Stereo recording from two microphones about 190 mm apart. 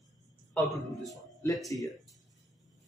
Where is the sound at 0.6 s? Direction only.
Centre (ahead or behind).